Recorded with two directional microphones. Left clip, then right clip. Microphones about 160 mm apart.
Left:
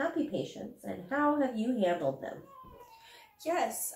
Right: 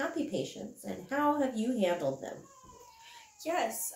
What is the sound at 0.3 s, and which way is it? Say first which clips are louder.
Speech: even; 20° right (ahead or behind).